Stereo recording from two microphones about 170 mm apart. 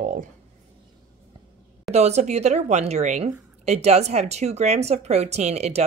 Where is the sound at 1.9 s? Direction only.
40° right (ahead or behind).